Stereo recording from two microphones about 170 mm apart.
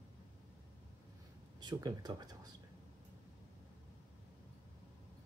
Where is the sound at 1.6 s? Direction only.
25° right (ahead or behind).